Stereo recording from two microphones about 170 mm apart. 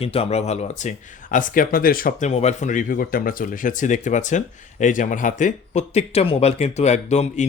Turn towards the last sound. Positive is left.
turn(degrees=40)  # may be behind; listen again after turning